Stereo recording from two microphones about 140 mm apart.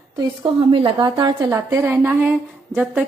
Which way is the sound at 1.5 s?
20° right (ahead or behind).